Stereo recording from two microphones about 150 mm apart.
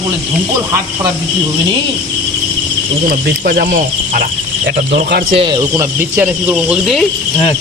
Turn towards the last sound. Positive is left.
turn(degrees=0)  # may be behind; listen again after turning